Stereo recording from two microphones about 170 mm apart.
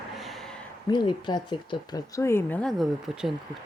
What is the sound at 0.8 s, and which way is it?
Speech, 25° left (ahead or behind).